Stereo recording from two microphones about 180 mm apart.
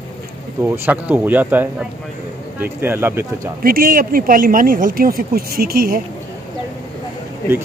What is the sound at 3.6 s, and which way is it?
Speech, 55° right (ahead or behind).